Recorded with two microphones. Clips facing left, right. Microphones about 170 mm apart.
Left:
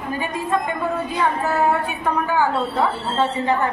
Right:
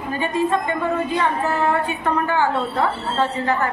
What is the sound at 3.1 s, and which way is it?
Speech, 15° left (ahead or behind).